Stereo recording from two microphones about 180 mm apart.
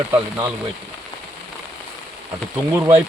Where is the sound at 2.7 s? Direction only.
15° right (ahead or behind).